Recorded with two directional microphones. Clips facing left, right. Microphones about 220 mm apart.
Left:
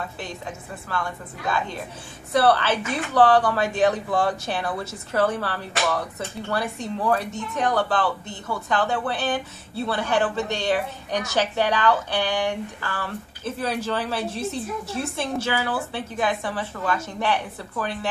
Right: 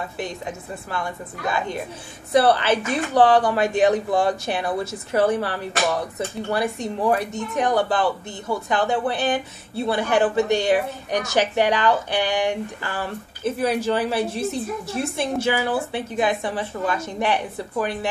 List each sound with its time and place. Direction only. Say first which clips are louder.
2.3 s a woman's voice: right 2 dB; 15° right (ahead or behind)